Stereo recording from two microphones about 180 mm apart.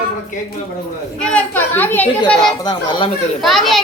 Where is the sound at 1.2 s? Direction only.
5° left (ahead or behind).